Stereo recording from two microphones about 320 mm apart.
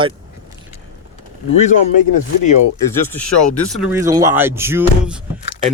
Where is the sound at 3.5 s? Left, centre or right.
Centre.